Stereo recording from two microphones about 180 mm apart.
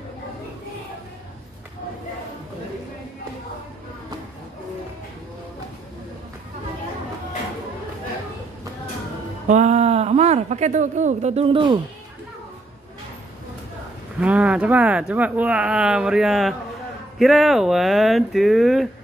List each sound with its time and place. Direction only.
9.5 s speech: 40° right (ahead or behind)
14.2 s speech: 5° right (ahead or behind)